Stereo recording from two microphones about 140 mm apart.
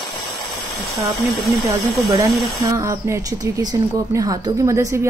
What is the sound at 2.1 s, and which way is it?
A woman's voice, 25° right (ahead or behind).